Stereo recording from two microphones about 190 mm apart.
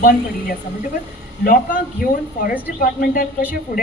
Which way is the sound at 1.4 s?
50° left (ahead or behind).